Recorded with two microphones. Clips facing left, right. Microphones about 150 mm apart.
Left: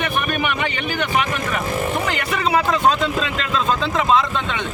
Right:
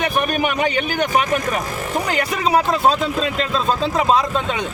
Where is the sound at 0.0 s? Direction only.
40° right (ahead or behind).